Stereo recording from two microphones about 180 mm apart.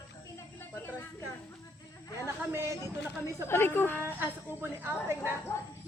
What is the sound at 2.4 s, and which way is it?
Speech, 15° right (ahead or behind).